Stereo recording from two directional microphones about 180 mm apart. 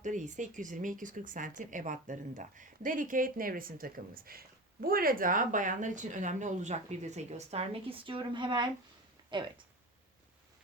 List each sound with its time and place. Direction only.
0.0 s speech: 40° right (ahead or behind); by 9.5 s 25° right (ahead or behind)